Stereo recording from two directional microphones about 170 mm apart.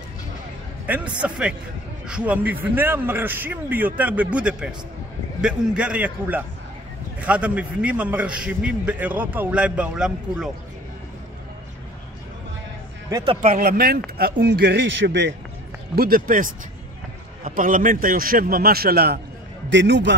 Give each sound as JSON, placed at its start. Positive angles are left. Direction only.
{"t": 0.8, "sound": "a man's voice", "side_deg": -10}
{"t": 13.1, "sound": "a man's voice", "side_deg": -30}
{"t": 13.4, "sound": "a man's voice", "side_deg": -55}
{"t": 14.1, "sound": "speech", "side_deg": -70}
{"t": 16.0, "sound": "a man's voice", "side_deg": -55}
{"t": 19.7, "sound": "a man's voice", "side_deg": -90}